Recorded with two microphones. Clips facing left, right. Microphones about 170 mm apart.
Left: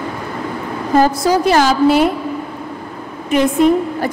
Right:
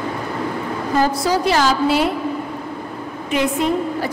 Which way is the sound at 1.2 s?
50° left (ahead or behind).